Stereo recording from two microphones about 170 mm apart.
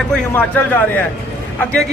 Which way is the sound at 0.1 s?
10° left (ahead or behind).